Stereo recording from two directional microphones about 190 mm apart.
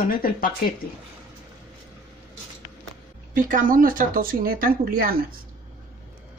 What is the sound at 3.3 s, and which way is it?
Speech, 45° right (ahead or behind).